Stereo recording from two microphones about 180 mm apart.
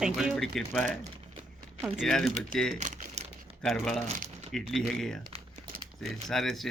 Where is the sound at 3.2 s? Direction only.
40° right (ahead or behind).